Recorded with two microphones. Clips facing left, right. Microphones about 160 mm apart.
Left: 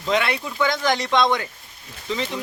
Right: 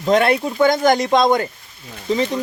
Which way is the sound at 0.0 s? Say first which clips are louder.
Right 7 dB; 45° right (ahead or behind).